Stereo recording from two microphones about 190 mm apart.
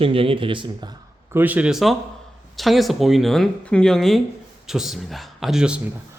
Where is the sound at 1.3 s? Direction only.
10° right (ahead or behind).